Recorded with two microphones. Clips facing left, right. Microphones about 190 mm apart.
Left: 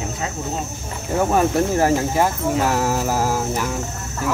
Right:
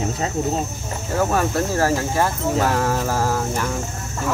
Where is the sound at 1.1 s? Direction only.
20° left (ahead or behind).